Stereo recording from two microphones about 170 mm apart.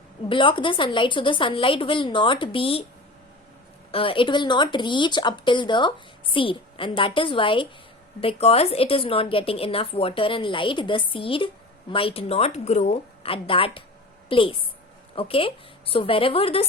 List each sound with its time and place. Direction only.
0.3 s a woman's voice: 30° left (ahead or behind)
3.9 s a woman's voice: 30° left (ahead or behind)